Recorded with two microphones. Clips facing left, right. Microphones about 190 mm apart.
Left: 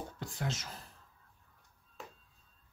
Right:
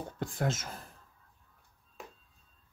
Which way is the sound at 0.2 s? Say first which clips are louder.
Right 8 dB; 50° right (ahead or behind).